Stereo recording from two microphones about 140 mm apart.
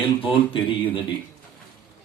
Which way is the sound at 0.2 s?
40° left (ahead or behind).